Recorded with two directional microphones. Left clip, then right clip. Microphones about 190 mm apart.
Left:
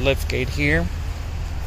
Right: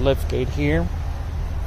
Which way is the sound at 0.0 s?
10° right (ahead or behind).